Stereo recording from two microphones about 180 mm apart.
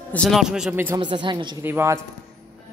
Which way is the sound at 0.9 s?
25° right (ahead or behind).